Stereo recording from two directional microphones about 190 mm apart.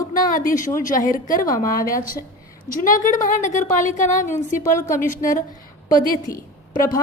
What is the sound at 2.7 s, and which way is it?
A woman's voice, 45° left (ahead or behind).